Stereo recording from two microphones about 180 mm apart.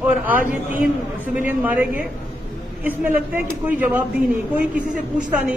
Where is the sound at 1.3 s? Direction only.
10° right (ahead or behind).